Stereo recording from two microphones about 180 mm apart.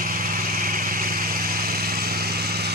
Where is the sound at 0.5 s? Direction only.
55° right (ahead or behind).